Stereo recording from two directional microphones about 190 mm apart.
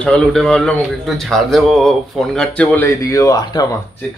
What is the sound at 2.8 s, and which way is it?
Speech, 15° left (ahead or behind).